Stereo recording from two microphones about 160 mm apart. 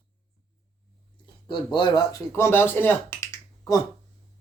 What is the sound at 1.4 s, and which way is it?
Speech, 30° left (ahead or behind).